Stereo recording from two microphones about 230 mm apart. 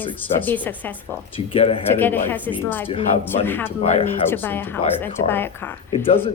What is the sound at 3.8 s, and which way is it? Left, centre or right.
Speech, left.